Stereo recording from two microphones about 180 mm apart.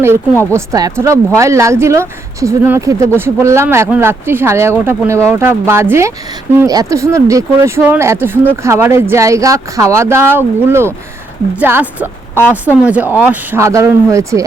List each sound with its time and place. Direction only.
0.5 s speech: 20° right (ahead or behind)